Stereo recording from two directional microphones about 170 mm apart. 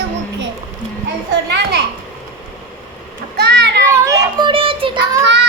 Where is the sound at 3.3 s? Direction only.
80° right.